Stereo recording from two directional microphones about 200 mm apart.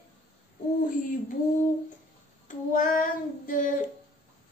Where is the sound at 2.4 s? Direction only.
40° left (ahead or behind).